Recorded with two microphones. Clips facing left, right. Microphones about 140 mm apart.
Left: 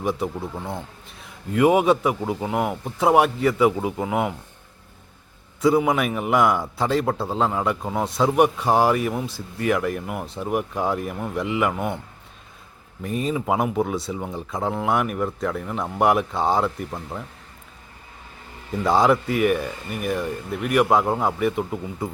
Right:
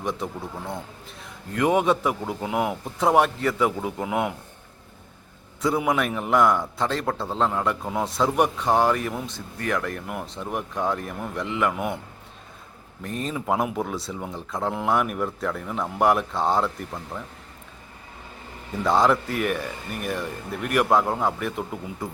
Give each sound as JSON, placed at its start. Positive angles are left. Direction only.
{"t": 0.0, "sound": "a man's voice", "side_deg": 5}
{"t": 1.5, "sound": "a man's voice", "side_deg": 10}
{"t": 5.6, "sound": "a man's voice", "side_deg": 0}
{"t": 13.0, "sound": "a man's voice", "side_deg": 5}
{"t": 16.6, "sound": "speech", "side_deg": 15}
{"t": 18.8, "sound": "a man's voice", "side_deg": 0}